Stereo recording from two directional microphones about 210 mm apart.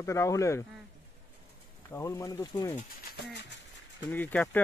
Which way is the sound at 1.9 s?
15° left (ahead or behind).